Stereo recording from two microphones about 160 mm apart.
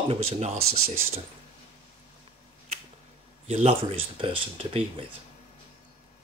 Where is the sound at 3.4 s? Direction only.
40° right (ahead or behind).